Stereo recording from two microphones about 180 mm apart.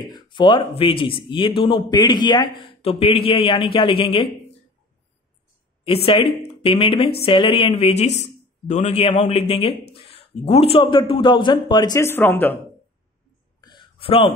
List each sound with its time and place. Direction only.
0.0 s speech: 25° left (ahead or behind)
6.0 s a woman's voice: 30° left (ahead or behind); by 12.5 s 10° left (ahead or behind)
13.6 s a sound: 25° left (ahead or behind)